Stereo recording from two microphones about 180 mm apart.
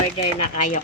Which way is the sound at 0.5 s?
45° left (ahead or behind).